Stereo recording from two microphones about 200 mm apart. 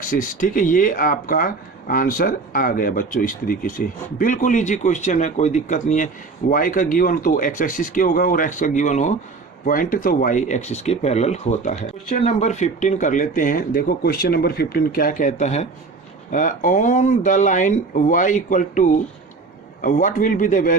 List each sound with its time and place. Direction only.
0.0 s speech: 45° left (ahead or behind)